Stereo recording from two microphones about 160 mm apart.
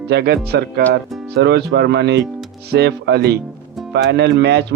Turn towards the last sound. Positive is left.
turn(degrees=-90)